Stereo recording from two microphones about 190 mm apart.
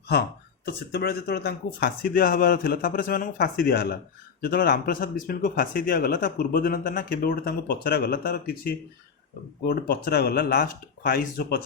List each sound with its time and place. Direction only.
0.7 s speech: 60° left (ahead or behind)